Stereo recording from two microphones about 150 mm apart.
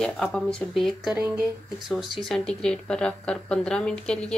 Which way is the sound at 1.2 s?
15° right (ahead or behind).